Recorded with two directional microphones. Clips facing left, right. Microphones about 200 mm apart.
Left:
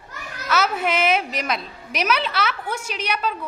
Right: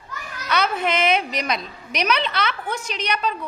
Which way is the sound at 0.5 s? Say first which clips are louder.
Even; 5° left (ahead or behind).